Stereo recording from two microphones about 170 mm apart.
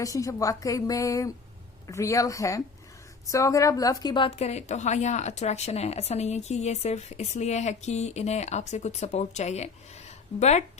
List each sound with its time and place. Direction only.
0.0 s a woman's voice: 20° left (ahead or behind); by 10.6 s 40° left (ahead or behind)